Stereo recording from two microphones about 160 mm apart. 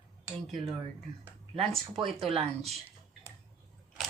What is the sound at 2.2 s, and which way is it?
Speech, 35° right (ahead or behind).